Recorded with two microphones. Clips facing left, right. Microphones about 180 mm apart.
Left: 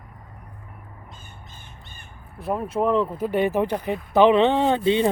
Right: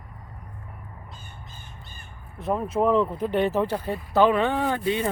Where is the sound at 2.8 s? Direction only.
Centre (ahead or behind).